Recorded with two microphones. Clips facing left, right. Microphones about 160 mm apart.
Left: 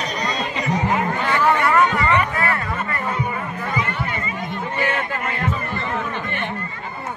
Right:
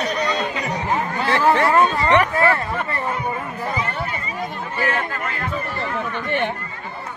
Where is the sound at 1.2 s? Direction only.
30° right (ahead or behind).